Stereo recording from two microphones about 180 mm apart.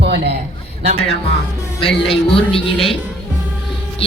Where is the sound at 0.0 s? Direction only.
70° right (ahead or behind).